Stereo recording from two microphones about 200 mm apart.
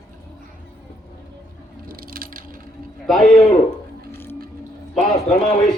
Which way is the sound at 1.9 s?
45° right (ahead or behind).